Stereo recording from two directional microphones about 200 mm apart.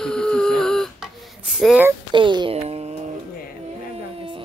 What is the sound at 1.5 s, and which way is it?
Speech, 5° right (ahead or behind).